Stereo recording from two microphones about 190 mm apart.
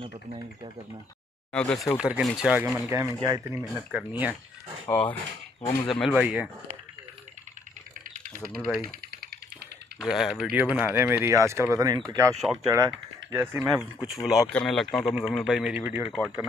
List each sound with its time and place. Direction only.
1.5 s speech: 5° left (ahead or behind)
3.2 s speech: 15° right (ahead or behind)
4.8 s speech: 10° left (ahead or behind)
8.4 s speech: centre (ahead or behind)
9.9 s speech: centre (ahead or behind)
13.7 s speech: centre (ahead or behind)